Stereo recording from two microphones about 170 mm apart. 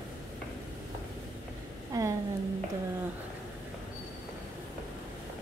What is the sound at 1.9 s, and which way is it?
Speech, 20° right (ahead or behind).